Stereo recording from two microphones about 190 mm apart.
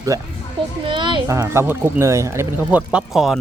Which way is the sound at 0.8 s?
25° right (ahead or behind).